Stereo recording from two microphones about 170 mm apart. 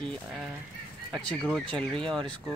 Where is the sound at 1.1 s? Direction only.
Centre (ahead or behind).